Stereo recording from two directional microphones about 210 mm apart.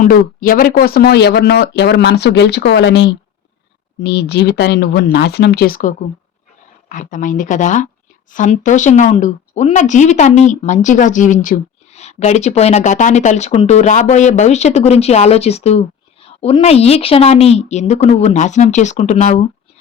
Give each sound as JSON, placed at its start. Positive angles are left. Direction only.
{"t": 0.0, "sound": "speech", "side_deg": 40}